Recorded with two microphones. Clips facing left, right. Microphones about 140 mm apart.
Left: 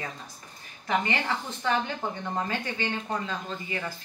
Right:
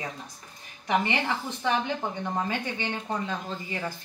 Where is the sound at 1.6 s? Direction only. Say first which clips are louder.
Right 1 dB; 15° right (ahead or behind).